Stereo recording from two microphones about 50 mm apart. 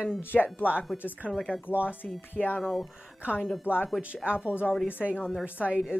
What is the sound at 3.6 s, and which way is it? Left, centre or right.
Speech, left.